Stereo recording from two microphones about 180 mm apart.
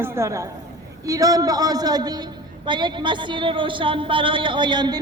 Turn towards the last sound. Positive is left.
turn(degrees=-25)  # may be behind; listen again after turning